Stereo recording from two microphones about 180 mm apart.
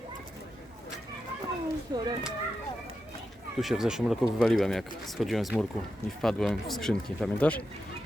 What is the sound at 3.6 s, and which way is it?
Speech, centre (ahead or behind).